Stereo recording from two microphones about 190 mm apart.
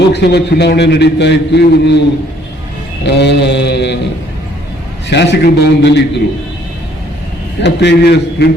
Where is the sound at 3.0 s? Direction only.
60° left (ahead or behind).